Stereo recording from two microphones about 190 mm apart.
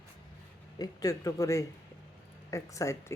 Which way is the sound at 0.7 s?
20° left (ahead or behind).